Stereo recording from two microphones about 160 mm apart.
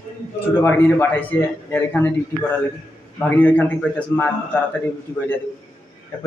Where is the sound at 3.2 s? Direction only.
10° left (ahead or behind).